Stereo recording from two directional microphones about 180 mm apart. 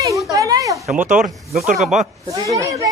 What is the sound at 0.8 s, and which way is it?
Speech, 45° right (ahead or behind).